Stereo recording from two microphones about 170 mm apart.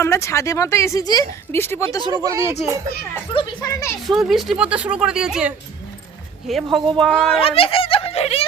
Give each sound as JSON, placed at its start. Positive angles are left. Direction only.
{"t": 0.0, "sound": "a woman's voice", "side_deg": 15}
{"t": 2.0, "sound": "speech", "side_deg": -20}
{"t": 3.3, "sound": "speech", "side_deg": 25}
{"t": 4.0, "sound": "speech", "side_deg": 0}
{"t": 6.7, "sound": "speech", "side_deg": -30}
{"t": 7.0, "sound": "speech", "side_deg": 5}
{"t": 7.4, "sound": "speech", "side_deg": 35}